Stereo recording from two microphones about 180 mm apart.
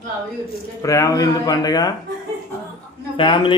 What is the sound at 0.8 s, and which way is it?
Speech, 20° left (ahead or behind).